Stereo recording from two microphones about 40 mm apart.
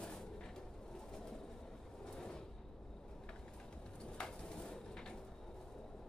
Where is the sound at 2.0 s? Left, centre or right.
Centre.